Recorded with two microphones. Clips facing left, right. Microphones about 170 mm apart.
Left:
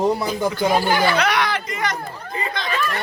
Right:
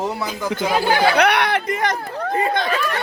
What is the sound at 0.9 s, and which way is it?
Chatter, 60° right (ahead or behind).